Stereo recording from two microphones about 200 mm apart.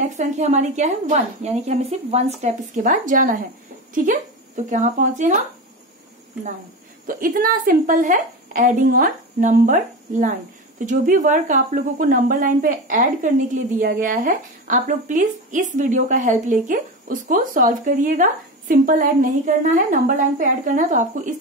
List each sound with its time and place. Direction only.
0.2 s speech: 35° right (ahead or behind)
7.1 s a woman's voice: 45° right (ahead or behind)